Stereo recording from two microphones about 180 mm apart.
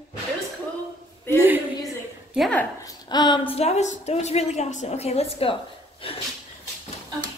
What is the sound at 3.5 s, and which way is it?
A woman's voice, 35° left (ahead or behind).